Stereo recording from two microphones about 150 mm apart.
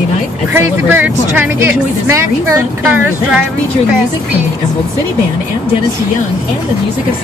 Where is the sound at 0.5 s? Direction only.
10° right (ahead or behind).